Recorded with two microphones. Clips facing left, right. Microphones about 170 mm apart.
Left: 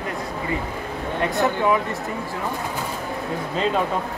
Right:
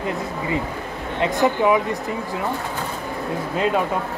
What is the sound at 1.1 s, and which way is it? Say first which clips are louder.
Speech: right 3 dB; 20° right (ahead or behind).